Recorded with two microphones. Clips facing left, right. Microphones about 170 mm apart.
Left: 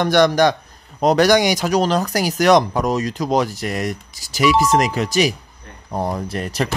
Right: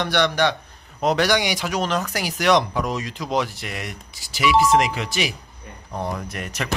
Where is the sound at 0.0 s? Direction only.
45° left (ahead or behind).